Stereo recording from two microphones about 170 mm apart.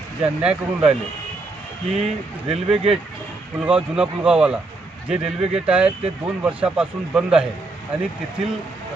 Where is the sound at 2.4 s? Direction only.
35° right (ahead or behind).